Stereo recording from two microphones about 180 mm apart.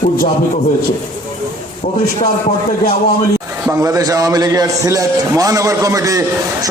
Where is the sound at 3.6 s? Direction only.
20° right (ahead or behind).